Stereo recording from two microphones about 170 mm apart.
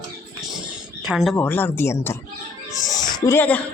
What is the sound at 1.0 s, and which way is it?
Speech, 5° right (ahead or behind).